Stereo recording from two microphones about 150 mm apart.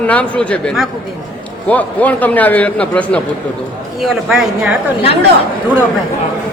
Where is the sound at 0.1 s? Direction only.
10° left (ahead or behind).